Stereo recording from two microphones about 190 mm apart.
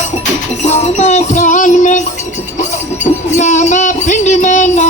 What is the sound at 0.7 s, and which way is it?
Music, 35° left (ahead or behind).